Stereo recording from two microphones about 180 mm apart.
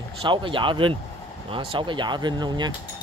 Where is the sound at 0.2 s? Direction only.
30° right (ahead or behind).